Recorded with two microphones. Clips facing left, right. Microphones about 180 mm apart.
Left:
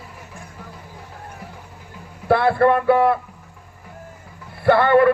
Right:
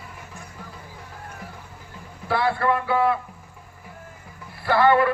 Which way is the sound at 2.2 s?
55° left (ahead or behind).